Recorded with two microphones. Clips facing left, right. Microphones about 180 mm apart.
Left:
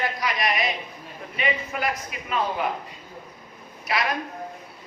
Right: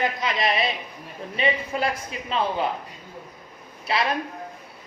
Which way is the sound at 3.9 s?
30° right (ahead or behind).